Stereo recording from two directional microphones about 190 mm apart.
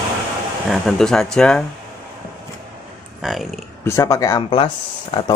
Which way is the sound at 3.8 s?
15° left (ahead or behind).